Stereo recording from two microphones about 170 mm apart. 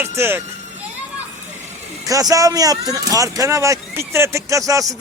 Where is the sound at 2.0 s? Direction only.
20° right (ahead or behind).